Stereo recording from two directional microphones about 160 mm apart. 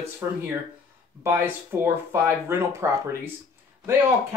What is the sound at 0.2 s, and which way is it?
Speech, 10° right (ahead or behind).